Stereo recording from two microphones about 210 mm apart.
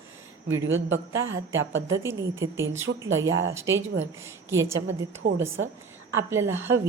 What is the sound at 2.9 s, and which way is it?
Speech, 60° right (ahead or behind).